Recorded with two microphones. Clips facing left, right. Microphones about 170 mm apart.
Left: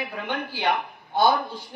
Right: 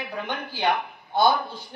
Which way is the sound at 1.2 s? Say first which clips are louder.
Even; 10° left (ahead or behind).